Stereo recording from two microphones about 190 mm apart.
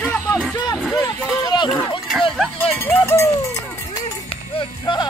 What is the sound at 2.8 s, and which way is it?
Speech, 15° left (ahead or behind).